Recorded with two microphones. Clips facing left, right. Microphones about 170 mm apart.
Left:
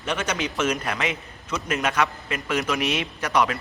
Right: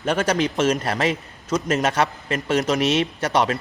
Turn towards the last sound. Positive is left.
turn(degrees=-30)  # may be behind; listen again after turning